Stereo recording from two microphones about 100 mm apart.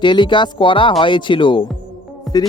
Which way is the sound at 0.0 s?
50° left (ahead or behind).